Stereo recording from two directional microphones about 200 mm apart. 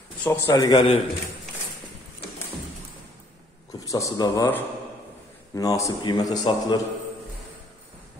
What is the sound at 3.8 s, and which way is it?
A man's voice, 15° left (ahead or behind).